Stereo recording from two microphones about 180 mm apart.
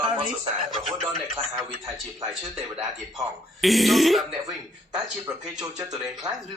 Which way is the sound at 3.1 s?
Centre (ahead or behind).